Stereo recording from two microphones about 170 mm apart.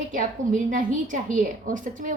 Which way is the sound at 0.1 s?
50° right (ahead or behind).